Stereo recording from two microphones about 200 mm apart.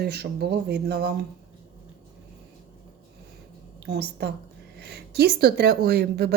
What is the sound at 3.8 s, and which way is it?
A woman's voice, 55° right (ahead or behind).